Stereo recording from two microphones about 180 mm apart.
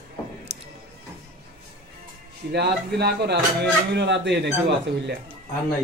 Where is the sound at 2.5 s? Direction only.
65° right (ahead or behind).